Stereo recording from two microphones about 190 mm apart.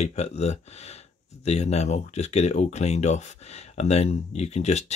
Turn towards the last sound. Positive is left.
turn(degrees=35)  # may be behind; listen again after turning